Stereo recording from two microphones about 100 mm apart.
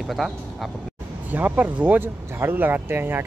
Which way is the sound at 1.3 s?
15° right (ahead or behind).